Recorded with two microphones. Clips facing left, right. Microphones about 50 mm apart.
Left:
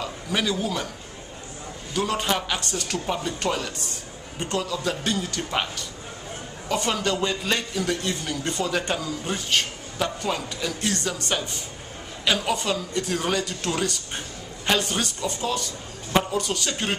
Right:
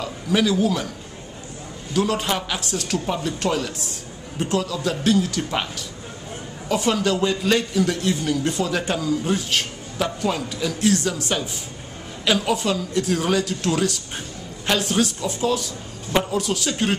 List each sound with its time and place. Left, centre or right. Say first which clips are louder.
0.0 s a man's voice: right 5 dB; centre
2.0 s a man's voice: right 3 dB; centre